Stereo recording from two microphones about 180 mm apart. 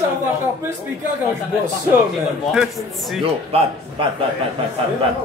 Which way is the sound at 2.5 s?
Centre (ahead or behind).